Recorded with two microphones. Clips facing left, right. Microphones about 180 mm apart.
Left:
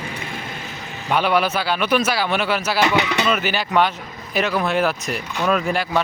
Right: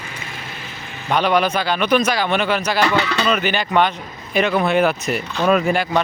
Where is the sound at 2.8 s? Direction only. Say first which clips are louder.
Left 1 dB; 15° left (ahead or behind).